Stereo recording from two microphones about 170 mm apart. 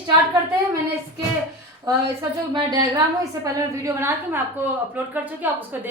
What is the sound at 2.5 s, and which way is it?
A woman's voice, 25° right (ahead or behind).